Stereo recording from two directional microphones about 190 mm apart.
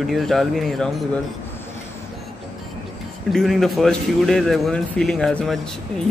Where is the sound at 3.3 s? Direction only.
Centre (ahead or behind).